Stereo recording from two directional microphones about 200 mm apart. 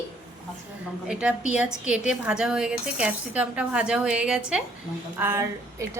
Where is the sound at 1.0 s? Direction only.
5° right (ahead or behind).